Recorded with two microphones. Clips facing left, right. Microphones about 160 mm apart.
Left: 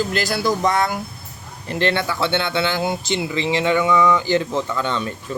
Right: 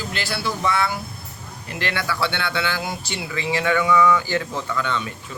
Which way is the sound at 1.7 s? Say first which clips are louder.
Left 6 dB; 30° left (ahead or behind).